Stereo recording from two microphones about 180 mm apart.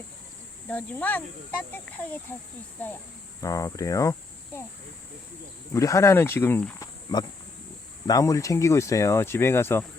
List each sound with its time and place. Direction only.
0.7 s speech: 10° left (ahead or behind)
3.4 s speech: 20° left (ahead or behind)
5.7 s speech: 15° left (ahead or behind)
8.0 s speech: 20° left (ahead or behind)